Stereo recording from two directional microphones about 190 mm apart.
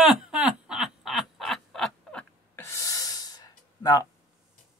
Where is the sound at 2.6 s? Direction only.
15° left (ahead or behind).